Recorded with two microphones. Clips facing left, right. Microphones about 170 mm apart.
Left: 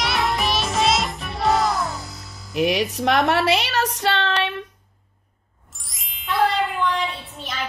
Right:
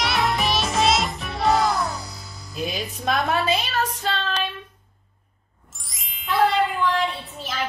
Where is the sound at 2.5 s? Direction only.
75° left (ahead or behind).